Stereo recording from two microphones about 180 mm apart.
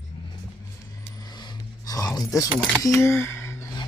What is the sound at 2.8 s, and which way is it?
Speech, 15° left (ahead or behind).